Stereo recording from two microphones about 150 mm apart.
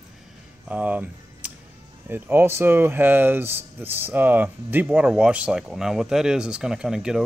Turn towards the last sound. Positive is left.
turn(degrees=-5)  # may be behind; listen again after turning